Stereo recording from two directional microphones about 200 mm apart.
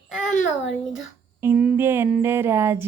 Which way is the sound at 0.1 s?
Centre (ahead or behind).